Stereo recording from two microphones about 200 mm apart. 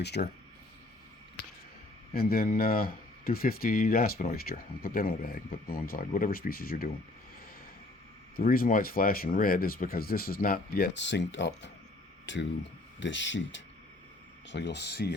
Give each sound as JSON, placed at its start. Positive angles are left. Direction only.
{"t": 0.0, "sound": "speech", "side_deg": 55}
{"t": 2.1, "sound": "speech", "side_deg": 50}
{"t": 8.4, "sound": "speech", "side_deg": 45}